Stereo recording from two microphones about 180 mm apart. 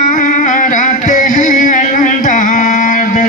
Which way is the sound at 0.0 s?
45° left (ahead or behind).